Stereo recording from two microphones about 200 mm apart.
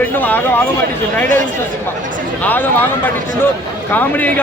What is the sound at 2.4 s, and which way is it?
Speech, 10° left (ahead or behind).